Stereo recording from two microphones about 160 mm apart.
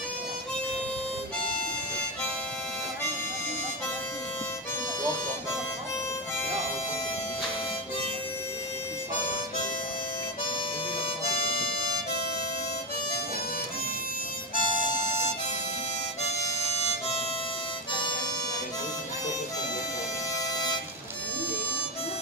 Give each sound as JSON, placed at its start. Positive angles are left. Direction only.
{"t": 11.2, "sound": "harmonica", "side_deg": 70}
{"t": 14.5, "sound": "harmonica", "side_deg": 50}